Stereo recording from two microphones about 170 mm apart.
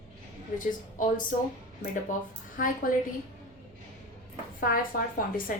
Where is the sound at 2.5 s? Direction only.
55° left (ahead or behind).